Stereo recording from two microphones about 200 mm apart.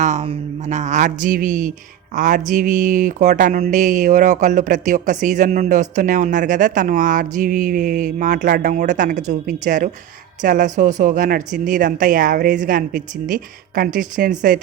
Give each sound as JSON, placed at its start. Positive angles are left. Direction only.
{"t": 0.0, "sound": "speech", "side_deg": -35}